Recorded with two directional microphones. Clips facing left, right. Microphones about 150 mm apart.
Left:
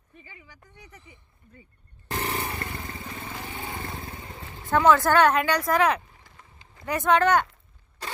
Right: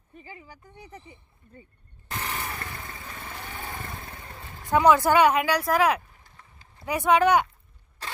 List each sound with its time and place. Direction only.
0.2 s speech: 35° right (ahead or behind)
2.0 s motorcycle: 35° left (ahead or behind)
2.4 s motorcycle: 25° left (ahead or behind)
3.4 s motorcycle: 15° left (ahead or behind)
4.7 s speech: 10° right (ahead or behind)
6.3 s a sound: 90° left
6.8 s speech: 10° right (ahead or behind)